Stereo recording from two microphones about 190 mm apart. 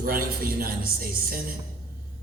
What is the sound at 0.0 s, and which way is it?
Speech, 50° right (ahead or behind).